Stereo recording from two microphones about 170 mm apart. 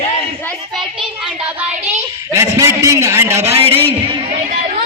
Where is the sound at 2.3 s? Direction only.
20° right (ahead or behind).